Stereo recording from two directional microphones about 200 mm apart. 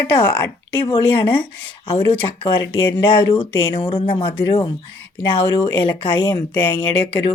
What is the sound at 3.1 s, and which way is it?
Speech, 25° left (ahead or behind).